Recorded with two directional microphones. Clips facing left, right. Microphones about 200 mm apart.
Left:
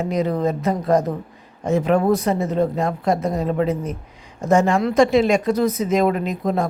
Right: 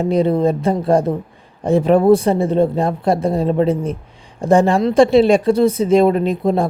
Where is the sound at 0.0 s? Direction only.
30° right (ahead or behind).